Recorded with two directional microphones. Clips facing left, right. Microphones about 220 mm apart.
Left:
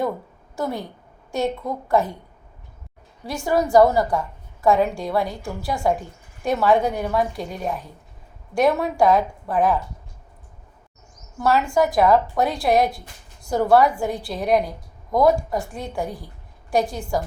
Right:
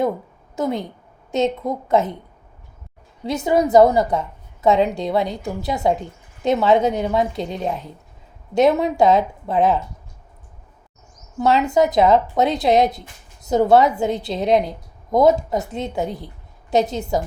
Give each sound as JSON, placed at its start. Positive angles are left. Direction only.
{"t": 0.5, "sound": "a woman's voice", "side_deg": -20}
{"t": 3.2, "sound": "a woman's voice", "side_deg": -20}
{"t": 11.3, "sound": "a woman's voice", "side_deg": -20}